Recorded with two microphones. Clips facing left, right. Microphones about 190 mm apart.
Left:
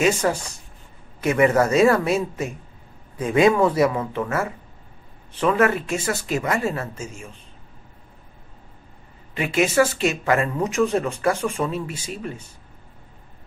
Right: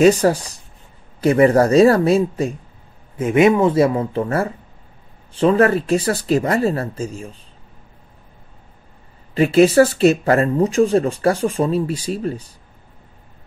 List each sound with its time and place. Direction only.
0.0 s speech: 35° right (ahead or behind)
9.3 s speech: 35° right (ahead or behind)